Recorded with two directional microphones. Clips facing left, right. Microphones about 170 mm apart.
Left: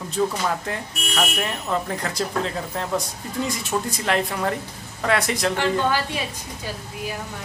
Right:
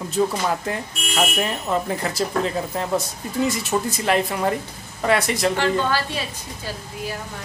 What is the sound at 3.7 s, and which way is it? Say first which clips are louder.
Speech: right 1 dB; 10° right (ahead or behind).